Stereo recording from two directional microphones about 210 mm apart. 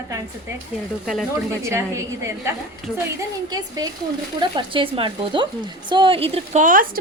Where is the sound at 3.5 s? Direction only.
15° right (ahead or behind).